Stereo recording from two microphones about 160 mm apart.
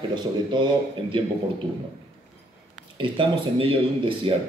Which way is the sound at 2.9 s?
35° right (ahead or behind).